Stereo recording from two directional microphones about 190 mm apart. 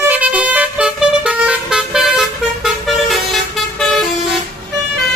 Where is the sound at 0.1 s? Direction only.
5° right (ahead or behind).